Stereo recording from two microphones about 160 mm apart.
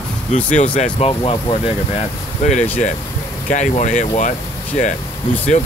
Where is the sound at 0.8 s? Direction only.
40° left (ahead or behind).